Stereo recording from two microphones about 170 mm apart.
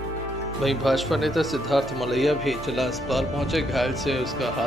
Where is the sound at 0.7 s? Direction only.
Centre (ahead or behind).